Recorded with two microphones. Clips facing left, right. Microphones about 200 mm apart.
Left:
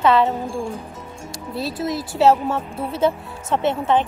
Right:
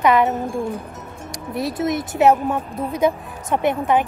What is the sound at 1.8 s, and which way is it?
Speech, 25° right (ahead or behind).